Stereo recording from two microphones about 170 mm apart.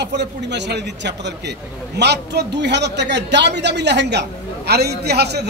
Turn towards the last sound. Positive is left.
turn(degrees=-75)  # may be behind; listen again after turning